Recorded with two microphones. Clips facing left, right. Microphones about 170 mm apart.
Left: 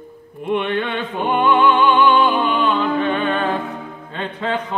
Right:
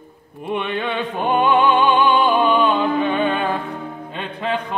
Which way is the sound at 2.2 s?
10° right (ahead or behind).